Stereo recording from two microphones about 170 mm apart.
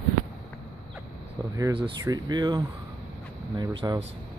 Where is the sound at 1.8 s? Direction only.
25° right (ahead or behind).